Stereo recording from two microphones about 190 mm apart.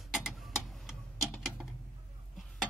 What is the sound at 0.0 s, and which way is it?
Tick-tock, centre (ahead or behind).